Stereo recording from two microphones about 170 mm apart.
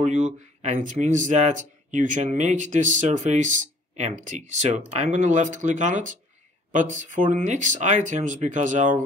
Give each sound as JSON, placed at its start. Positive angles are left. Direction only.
{"t": 0.0, "sound": "speech", "side_deg": -45}